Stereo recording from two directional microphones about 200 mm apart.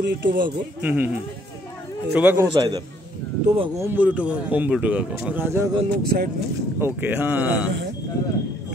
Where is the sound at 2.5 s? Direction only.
25° right (ahead or behind).